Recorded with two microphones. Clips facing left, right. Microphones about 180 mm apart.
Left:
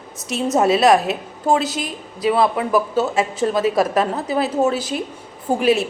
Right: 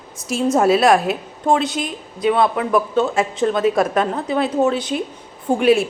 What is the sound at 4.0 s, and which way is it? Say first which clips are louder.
Speech: right 1 dB; 5° left (ahead or behind).